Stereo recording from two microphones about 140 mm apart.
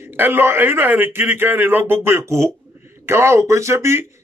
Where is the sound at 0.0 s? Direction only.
15° right (ahead or behind).